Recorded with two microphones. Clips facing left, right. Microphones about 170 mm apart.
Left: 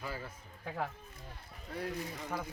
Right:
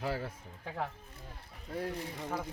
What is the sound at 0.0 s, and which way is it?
Speech, 75° right (ahead or behind).